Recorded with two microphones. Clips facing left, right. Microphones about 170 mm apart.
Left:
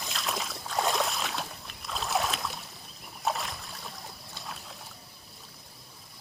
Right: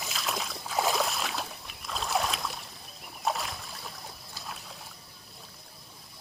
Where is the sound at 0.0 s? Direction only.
Centre (ahead or behind).